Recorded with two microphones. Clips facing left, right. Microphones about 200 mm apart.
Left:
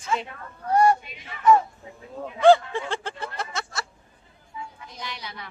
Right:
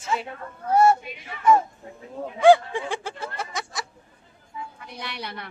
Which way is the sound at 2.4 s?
15° right (ahead or behind).